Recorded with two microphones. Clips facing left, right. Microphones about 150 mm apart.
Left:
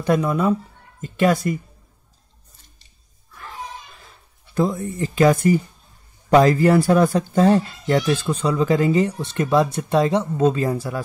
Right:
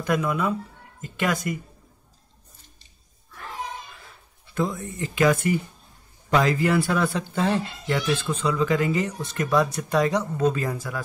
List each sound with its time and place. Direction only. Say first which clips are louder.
0.0 s speech: left 5 dB; 35° left (ahead or behind)
4.6 s speech: left 6 dB; 35° left (ahead or behind)